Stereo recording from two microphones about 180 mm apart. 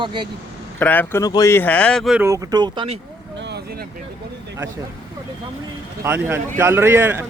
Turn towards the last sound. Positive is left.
turn(degrees=-10)  # may be behind; listen again after turning